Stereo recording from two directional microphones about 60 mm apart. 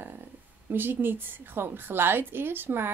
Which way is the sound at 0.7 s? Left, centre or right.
Right.